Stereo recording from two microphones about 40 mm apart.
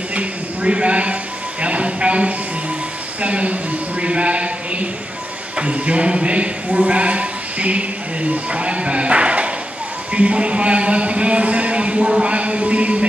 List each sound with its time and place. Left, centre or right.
0.1 s a man's voice: right